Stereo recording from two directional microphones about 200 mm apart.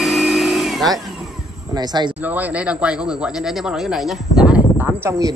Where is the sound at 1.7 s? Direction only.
20° right (ahead or behind).